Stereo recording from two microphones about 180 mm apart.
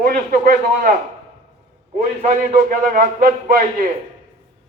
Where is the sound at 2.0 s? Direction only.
45° right (ahead or behind).